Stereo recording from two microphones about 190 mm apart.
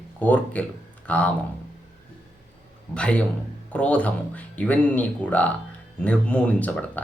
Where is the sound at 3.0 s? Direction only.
5° left (ahead or behind).